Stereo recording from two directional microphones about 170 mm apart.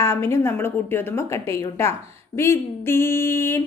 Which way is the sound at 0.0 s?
15° left (ahead or behind).